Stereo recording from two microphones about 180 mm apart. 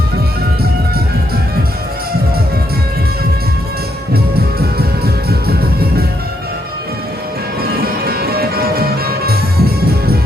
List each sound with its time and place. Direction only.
4.8 s music: 60° right (ahead or behind)
8.0 s music: 55° right (ahead or behind)